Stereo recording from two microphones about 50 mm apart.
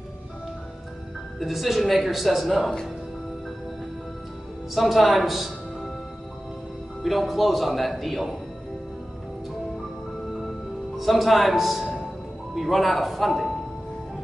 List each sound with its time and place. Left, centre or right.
1.4 s speech: centre
4.7 s a man's voice: centre
7.0 s speech: centre
11.0 s speech: centre